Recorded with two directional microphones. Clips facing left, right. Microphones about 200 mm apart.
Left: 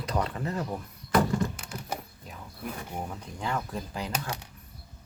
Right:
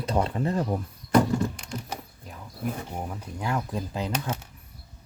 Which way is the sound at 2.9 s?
10° right (ahead or behind).